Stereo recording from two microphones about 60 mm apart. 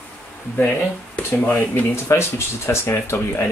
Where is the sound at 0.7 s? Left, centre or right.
Left.